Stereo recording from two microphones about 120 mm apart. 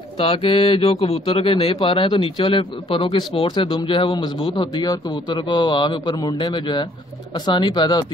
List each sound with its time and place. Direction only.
0.2 s a man's voice: 50° left (ahead or behind)